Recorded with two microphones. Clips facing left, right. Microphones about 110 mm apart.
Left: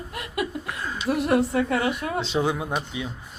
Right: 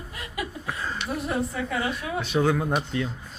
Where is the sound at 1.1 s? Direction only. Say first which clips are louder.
Left 8 dB; 75° left (ahead or behind); by 2.2 s 55° left (ahead or behind).